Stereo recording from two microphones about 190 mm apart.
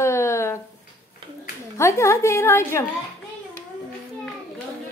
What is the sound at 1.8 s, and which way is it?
Speech, 15° left (ahead or behind).